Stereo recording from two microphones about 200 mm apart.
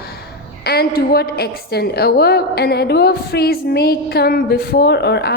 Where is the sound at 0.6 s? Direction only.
50° left (ahead or behind).